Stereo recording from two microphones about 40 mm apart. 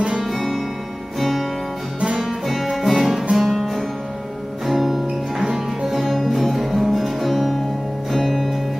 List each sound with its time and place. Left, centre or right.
0.2 s music: centre
2.0 s music: right
2.2 s music: centre